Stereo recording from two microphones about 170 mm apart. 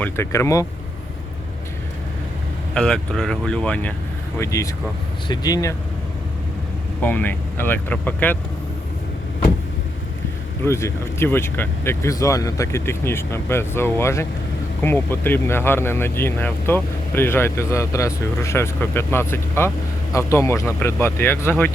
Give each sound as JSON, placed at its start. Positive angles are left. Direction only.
{"t": 0.0, "sound": "speech", "side_deg": 15}
{"t": 2.7, "sound": "speech", "side_deg": 5}
{"t": 7.0, "sound": "speech", "side_deg": 10}
{"t": 10.6, "sound": "speech", "side_deg": 15}